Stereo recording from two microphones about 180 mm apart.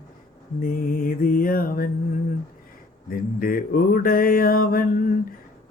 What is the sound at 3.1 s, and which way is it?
Mantra, 55° left (ahead or behind).